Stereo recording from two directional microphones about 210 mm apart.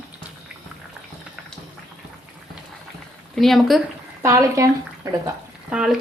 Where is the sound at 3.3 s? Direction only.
Centre (ahead or behind).